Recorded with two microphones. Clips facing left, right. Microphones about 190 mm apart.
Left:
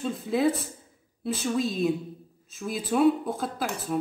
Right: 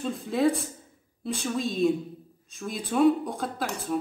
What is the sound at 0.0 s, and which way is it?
Speech, centre (ahead or behind).